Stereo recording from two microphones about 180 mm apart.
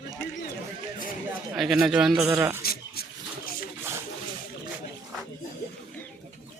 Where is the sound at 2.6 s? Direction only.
55° left (ahead or behind).